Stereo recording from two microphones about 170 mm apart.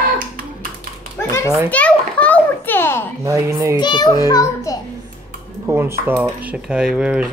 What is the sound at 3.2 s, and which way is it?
Speech, 20° right (ahead or behind).